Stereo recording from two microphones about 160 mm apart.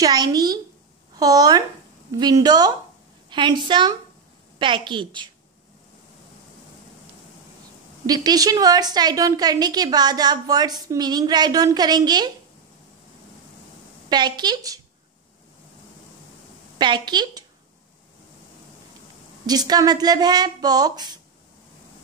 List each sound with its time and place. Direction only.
0.0 s a woman's voice: 25° right (ahead or behind)
8.1 s a woman's voice: 25° right (ahead or behind)
14.0 s a woman's voice: 25° right (ahead or behind)
16.7 s a woman's voice: 30° right (ahead or behind)
19.4 s a woman's voice: 25° right (ahead or behind)